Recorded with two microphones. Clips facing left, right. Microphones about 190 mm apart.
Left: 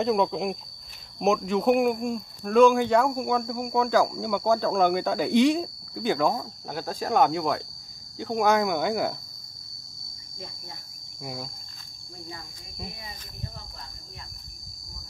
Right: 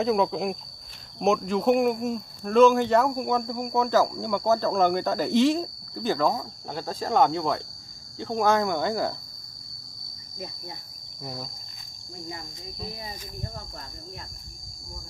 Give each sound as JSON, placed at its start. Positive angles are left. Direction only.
{"t": 0.0, "sound": "speech", "side_deg": 0}
{"t": 11.1, "sound": "speech", "side_deg": 10}
{"t": 13.4, "sound": "cricket", "side_deg": -50}